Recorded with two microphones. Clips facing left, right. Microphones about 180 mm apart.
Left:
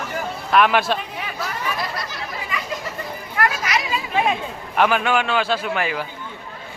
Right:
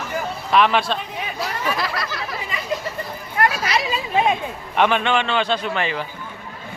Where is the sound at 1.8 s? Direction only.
85° right.